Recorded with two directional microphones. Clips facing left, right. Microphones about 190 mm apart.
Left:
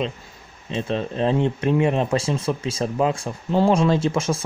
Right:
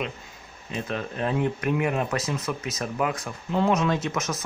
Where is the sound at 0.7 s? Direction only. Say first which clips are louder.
Left 6 dB; 25° left (ahead or behind).